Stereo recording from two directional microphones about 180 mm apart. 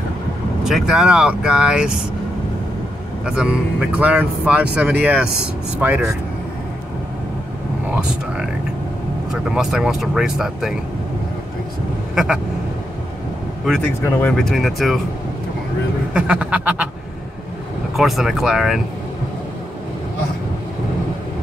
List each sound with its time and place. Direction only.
0.7 s speech: centre (ahead or behind)
3.3 s speech: 5° right (ahead or behind)
9.3 s speech: 5° right (ahead or behind)
14.0 s speech: 5° left (ahead or behind)
16.1 s speech: 5° right (ahead or behind)
17.9 s speech: centre (ahead or behind)